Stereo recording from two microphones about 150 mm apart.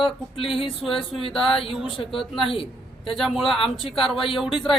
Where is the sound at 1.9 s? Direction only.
35° left (ahead or behind).